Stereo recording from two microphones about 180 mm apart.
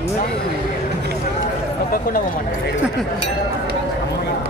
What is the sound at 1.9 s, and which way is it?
Speech, 50° left (ahead or behind).